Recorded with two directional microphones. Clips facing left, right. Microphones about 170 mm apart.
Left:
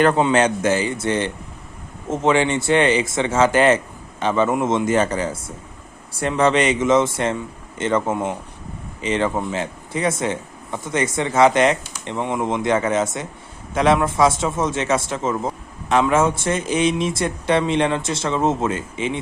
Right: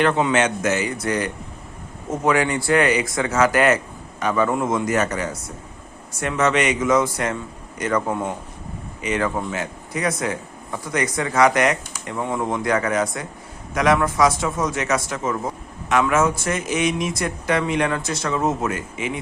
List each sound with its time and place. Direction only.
0.0 s speech: 35° left (ahead or behind)